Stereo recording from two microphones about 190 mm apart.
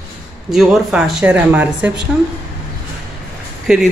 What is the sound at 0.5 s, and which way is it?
Speech, centre (ahead or behind).